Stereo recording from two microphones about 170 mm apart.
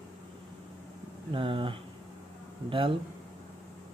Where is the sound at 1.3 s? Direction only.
30° right (ahead or behind).